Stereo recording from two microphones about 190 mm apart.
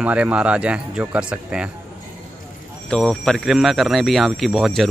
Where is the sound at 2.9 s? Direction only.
5° left (ahead or behind).